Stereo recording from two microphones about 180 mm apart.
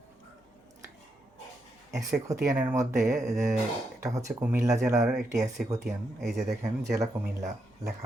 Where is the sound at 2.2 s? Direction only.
15° right (ahead or behind).